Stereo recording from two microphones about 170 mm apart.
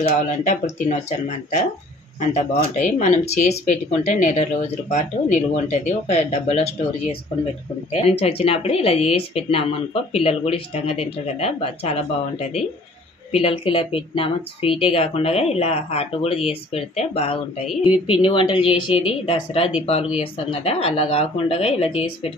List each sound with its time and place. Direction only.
0.0 s speech: 45° left (ahead or behind)
2.1 s speech: 45° left (ahead or behind)
7.9 s speech: 35° left (ahead or behind)